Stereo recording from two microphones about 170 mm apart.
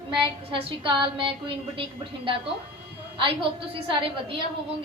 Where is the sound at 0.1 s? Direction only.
30° right (ahead or behind).